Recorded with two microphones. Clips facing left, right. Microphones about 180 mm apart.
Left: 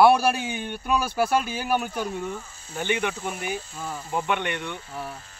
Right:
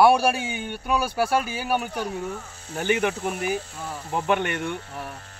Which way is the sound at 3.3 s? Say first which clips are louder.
Right 4 dB; 70° right (ahead or behind).